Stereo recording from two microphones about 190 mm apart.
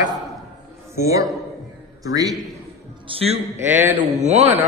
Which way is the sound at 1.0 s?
15° right (ahead or behind).